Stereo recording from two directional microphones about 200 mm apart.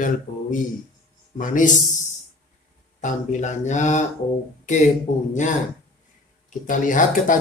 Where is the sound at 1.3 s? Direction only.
40° left (ahead or behind).